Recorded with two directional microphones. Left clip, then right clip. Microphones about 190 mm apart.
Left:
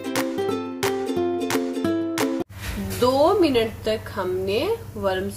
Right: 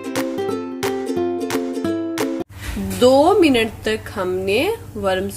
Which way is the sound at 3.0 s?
40° right (ahead or behind).